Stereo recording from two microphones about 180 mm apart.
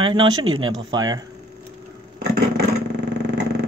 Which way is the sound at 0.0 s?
30° right (ahead or behind).